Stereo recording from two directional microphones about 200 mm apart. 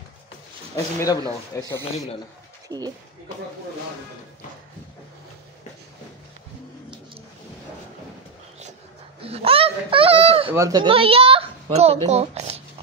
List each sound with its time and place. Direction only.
0.9 s speech: 15° left (ahead or behind)
2.7 s a child's voice: 20° right (ahead or behind)
9.2 s a child's voice: 30° right (ahead or behind)
10.5 s a child's voice: 15° right (ahead or behind)